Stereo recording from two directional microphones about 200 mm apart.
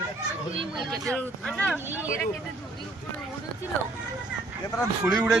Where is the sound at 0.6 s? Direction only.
25° right (ahead or behind).